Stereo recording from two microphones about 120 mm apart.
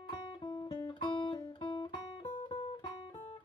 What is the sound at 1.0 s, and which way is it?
Guitar, 40° left (ahead or behind).